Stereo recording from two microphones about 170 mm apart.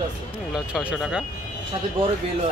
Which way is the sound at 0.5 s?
5° right (ahead or behind).